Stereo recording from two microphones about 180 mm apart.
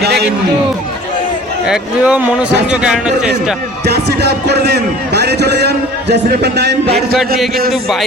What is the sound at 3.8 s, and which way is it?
A man's voice, 65° right (ahead or behind).